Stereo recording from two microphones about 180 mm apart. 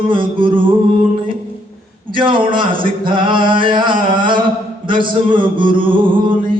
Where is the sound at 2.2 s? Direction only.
25° right (ahead or behind).